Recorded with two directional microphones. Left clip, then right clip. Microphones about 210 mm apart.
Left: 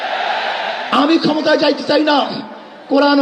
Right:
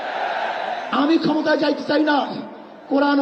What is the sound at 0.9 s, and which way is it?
A man's voice, 35° left (ahead or behind).